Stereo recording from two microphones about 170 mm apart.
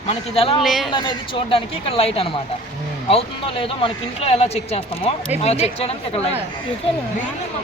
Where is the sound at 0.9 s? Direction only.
30° left (ahead or behind).